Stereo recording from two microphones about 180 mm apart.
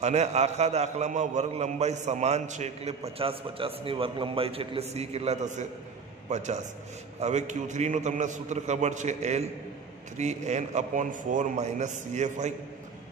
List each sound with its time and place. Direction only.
0.0 s a man's voice: 40° right (ahead or behind)